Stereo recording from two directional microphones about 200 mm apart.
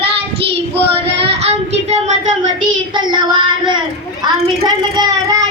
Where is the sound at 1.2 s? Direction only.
30° right (ahead or behind).